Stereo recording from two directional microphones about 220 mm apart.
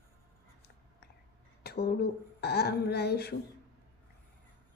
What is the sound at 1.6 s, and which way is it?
Speech, 45° left (ahead or behind).